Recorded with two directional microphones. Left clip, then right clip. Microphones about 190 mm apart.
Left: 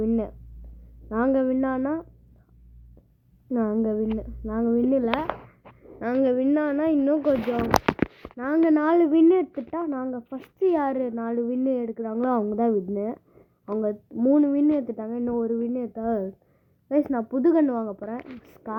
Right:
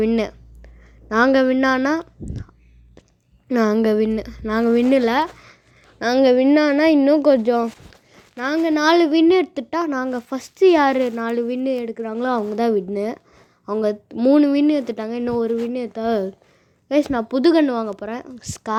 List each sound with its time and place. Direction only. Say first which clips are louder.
0.0 s speech: right 7 dB; 30° right (ahead or behind)
3.5 s speech: right 8 dB; 40° right (ahead or behind)
8.7 s a woman's voice: right 7 dB; 20° right (ahead or behind)